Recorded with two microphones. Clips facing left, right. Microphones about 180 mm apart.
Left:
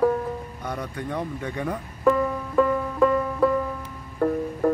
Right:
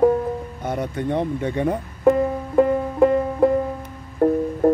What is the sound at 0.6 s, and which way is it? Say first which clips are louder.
Music: right 6 dB; 25° right (ahead or behind).